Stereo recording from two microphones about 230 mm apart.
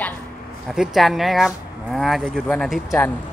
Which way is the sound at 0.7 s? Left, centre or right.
Centre.